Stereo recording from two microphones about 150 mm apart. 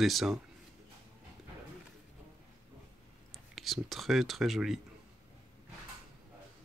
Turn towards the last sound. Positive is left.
turn(degrees=0)  # may be behind; listen again after turning